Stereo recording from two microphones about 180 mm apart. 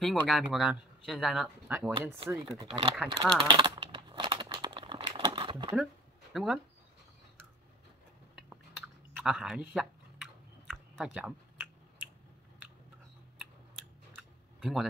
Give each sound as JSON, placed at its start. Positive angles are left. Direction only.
{"t": 0.0, "sound": "speech", "side_deg": 0}
{"t": 2.2, "sound": "speech", "side_deg": -20}
{"t": 3.3, "sound": "crumpling", "side_deg": -25}
{"t": 6.3, "sound": "speech", "side_deg": -5}
{"t": 8.4, "sound": "chewing", "side_deg": -5}
{"t": 13.4, "sound": "a sound", "side_deg": 0}